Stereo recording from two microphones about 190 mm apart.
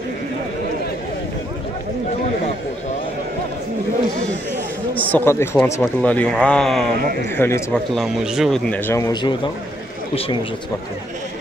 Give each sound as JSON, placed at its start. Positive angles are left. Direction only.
{"t": 4.9, "sound": "speech", "side_deg": 10}
{"t": 7.9, "sound": "speech", "side_deg": 0}